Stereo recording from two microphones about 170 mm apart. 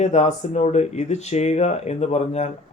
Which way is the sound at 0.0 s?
40° left (ahead or behind).